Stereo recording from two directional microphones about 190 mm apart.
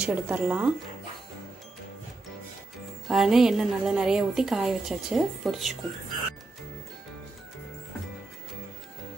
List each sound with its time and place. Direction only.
0.0 s speech: 5° right (ahead or behind)
3.1 s a woman's voice: centre (ahead or behind)